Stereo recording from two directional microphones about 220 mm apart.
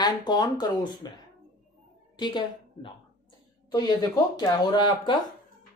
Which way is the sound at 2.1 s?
20° left (ahead or behind).